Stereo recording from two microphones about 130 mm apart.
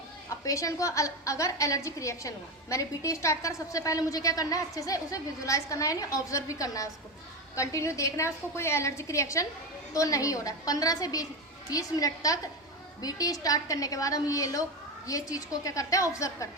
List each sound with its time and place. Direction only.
0.4 s a woman's voice: 25° left (ahead or behind)